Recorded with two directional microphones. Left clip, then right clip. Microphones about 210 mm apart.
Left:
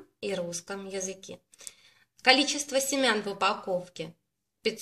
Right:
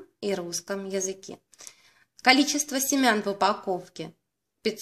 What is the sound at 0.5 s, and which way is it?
Speech, 45° right (ahead or behind).